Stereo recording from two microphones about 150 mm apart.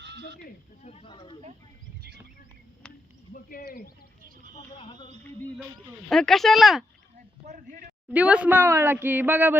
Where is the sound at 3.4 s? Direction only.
80° left.